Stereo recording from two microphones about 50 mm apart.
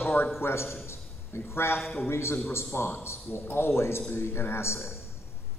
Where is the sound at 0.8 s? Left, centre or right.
Left.